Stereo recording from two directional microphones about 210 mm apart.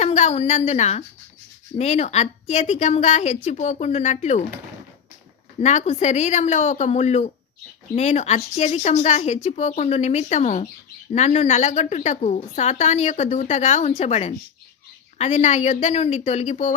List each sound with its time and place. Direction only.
0.0 s a woman's voice: 35° left (ahead or behind)
5.5 s a woman's voice: 35° left (ahead or behind)